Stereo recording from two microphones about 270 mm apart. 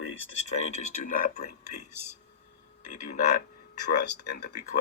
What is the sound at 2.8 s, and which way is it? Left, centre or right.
Speech, left.